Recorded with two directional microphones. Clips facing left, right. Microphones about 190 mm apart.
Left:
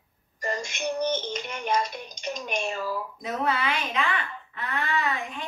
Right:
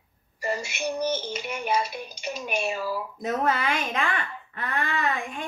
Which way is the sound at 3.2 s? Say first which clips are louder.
Right 3 dB; 45° right (ahead or behind).